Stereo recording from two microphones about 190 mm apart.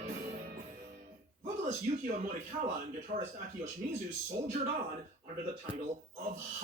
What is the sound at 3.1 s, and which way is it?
Speech, 35° right (ahead or behind).